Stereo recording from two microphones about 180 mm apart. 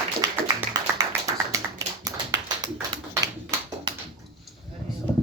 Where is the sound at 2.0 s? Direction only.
20° right (ahead or behind).